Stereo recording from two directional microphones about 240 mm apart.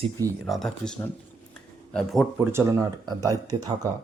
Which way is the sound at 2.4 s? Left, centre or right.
Centre.